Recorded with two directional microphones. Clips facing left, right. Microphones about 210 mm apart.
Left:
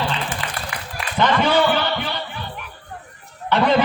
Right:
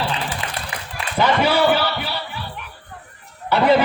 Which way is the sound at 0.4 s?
25° right (ahead or behind).